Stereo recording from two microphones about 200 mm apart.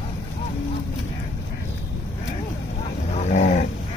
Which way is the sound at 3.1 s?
35° left (ahead or behind).